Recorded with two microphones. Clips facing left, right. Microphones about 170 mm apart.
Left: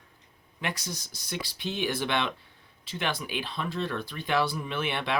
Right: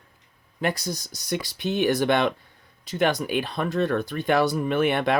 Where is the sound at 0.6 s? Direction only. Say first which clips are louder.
Right 8 dB; 40° right (ahead or behind).